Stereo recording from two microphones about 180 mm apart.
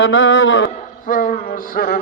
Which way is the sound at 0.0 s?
90° left.